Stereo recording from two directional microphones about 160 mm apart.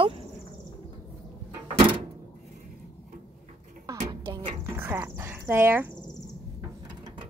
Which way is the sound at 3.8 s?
30° right (ahead or behind).